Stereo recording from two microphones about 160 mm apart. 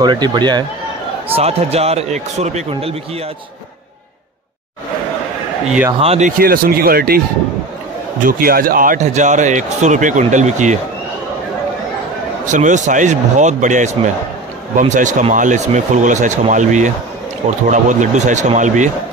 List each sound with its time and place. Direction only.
0.0 s speech: 25° right (ahead or behind)
1.3 s speech: 40° right (ahead or behind)
5.9 s speech: 40° right (ahead or behind)
6.3 s speech: 65° right (ahead or behind)
8.3 s speech: 65° right (ahead or behind); by 10.8 s 50° right (ahead or behind)
12.4 s speech: 50° right (ahead or behind)